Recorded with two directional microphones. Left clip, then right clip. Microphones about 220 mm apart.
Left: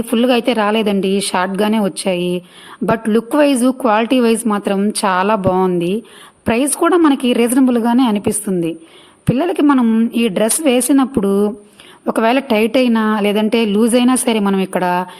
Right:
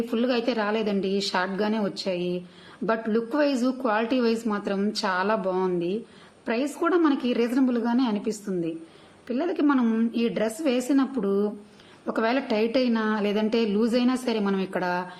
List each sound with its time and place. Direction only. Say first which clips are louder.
0.1 s a woman's voice: left 13 dB; 45° left (ahead or behind)